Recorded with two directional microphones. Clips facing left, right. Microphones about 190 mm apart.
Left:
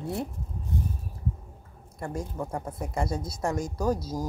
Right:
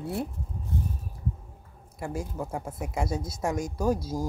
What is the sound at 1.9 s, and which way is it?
Speech, 5° right (ahead or behind).